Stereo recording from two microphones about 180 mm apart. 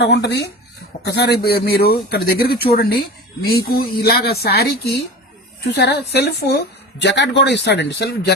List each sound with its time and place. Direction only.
0.0 s speech: 70° left (ahead or behind)